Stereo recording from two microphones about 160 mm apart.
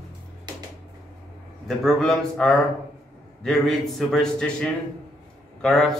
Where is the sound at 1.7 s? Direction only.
Centre (ahead or behind).